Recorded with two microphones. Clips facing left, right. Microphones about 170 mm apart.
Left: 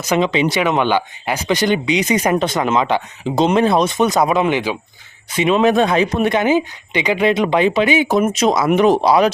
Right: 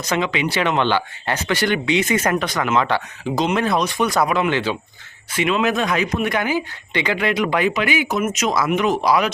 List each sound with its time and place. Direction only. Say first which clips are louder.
0.2 s speech: left 7 dB; 20° left (ahead or behind)
0.6 s speech: left 3 dB; 10° left (ahead or behind)
5.5 s speech: left 8 dB; 30° left (ahead or behind)